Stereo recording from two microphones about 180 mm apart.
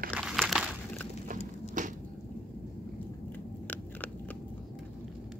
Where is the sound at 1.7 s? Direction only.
45° right (ahead or behind).